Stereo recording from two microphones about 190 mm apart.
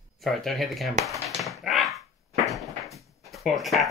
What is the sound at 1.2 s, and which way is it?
Dog, centre (ahead or behind).